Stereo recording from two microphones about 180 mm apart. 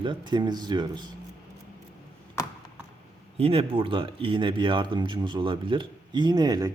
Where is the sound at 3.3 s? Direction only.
30° right (ahead or behind).